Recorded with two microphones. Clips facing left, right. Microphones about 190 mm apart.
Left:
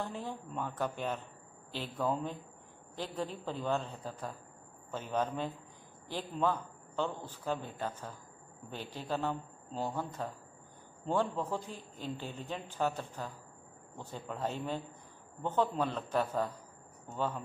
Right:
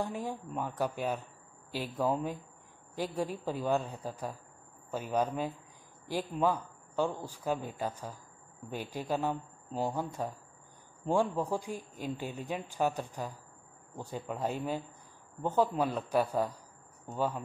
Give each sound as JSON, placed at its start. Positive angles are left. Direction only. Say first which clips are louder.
{"t": 0.0, "sound": "a man's voice", "louder": "right 4 dB", "side_deg": -10}